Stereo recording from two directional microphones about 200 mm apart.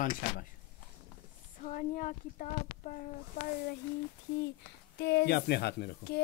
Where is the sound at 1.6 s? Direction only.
40° left (ahead or behind).